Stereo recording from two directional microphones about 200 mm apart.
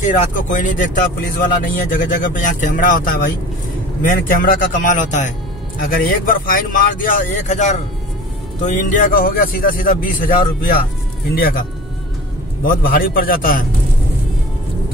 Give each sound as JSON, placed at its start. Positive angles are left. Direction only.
{"t": 0.0, "sound": "speech", "side_deg": 40}
{"t": 12.6, "sound": "speech", "side_deg": 45}